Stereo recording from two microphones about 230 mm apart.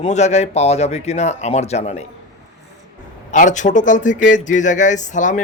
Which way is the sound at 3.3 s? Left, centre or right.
Left.